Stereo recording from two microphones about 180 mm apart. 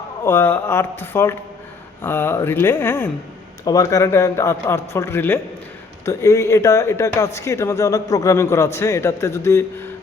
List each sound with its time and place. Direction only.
0.3 s a man's voice: 10° left (ahead or behind)